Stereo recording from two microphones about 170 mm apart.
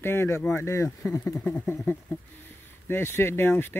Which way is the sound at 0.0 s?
15° left (ahead or behind).